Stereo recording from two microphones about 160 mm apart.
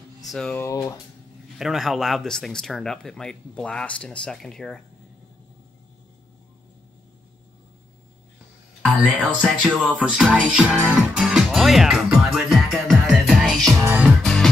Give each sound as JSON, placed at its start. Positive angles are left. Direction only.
{"t": 0.2, "sound": "speech", "side_deg": 5}
{"t": 0.6, "sound": "speech", "side_deg": 20}
{"t": 1.6, "sound": "music", "side_deg": 0}
{"t": 8.8, "sound": "music", "side_deg": -10}
{"t": 13.7, "sound": "music", "side_deg": -15}
{"t": 14.0, "sound": "music", "side_deg": 5}